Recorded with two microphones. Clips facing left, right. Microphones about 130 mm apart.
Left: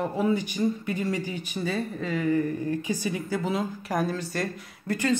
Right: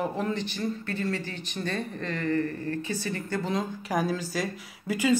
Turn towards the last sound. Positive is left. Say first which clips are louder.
# right 1 dB
turn(degrees=-5)  # may be behind; listen again after turning